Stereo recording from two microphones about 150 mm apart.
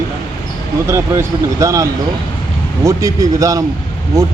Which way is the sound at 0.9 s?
20° right (ahead or behind).